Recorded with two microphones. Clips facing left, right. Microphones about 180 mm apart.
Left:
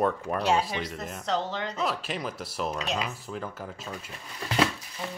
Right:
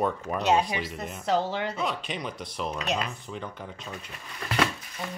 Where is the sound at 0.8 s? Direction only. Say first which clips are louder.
Even; 5° right (ahead or behind).